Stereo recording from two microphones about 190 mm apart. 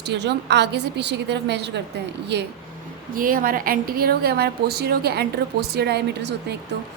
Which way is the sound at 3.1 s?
50° right (ahead or behind).